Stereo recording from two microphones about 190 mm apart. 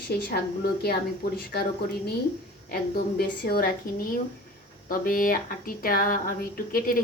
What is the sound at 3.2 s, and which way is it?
A woman's voice, 55° left (ahead or behind).